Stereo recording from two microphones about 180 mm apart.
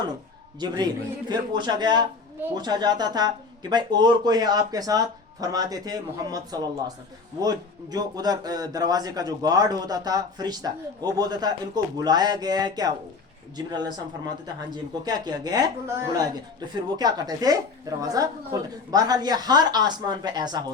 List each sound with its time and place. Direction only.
1.3 s speech: 25° right (ahead or behind)